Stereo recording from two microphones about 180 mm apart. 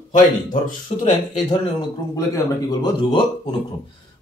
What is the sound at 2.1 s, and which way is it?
Speech, 20° left (ahead or behind).